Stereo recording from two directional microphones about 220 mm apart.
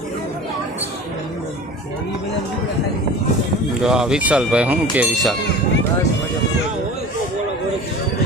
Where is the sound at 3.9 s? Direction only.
5° right (ahead or behind).